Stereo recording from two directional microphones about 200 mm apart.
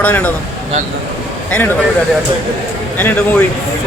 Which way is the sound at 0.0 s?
5° left (ahead or behind).